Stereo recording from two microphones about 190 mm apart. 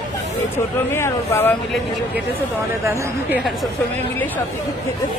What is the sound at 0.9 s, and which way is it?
Speech, 10° left (ahead or behind).